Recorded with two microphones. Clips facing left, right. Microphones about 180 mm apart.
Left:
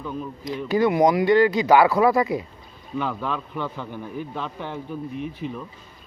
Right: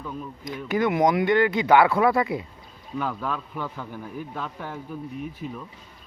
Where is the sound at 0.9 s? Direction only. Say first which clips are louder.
Left 2 dB; 20° left (ahead or behind).